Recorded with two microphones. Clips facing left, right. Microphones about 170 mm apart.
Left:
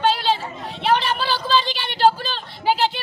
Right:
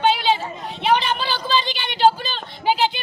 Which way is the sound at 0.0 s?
Centre (ahead or behind).